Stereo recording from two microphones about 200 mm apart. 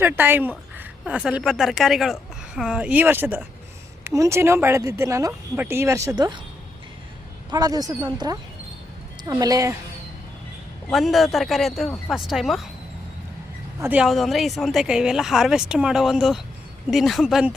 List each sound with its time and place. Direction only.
0.0 s a woman's voice: 10° right (ahead or behind)
7.5 s speech: 20° right (ahead or behind)
10.9 s a woman's voice: centre (ahead or behind)
13.8 s a woman's voice: 5° right (ahead or behind)